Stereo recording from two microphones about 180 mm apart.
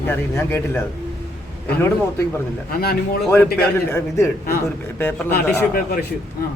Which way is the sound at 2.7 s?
60° left (ahead or behind).